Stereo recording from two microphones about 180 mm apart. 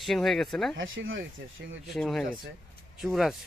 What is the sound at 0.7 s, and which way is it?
Speech, 90° right.